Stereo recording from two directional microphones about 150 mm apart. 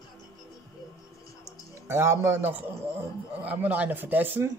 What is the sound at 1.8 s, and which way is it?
Speech, 15° right (ahead or behind).